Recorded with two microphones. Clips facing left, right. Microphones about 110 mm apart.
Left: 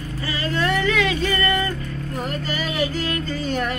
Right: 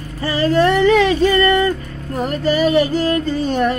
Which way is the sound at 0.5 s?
35° right (ahead or behind).